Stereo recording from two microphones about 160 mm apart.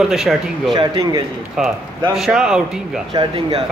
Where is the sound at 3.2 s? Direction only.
30° right (ahead or behind).